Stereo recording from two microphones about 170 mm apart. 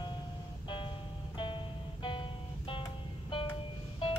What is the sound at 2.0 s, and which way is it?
Music, 30° left (ahead or behind).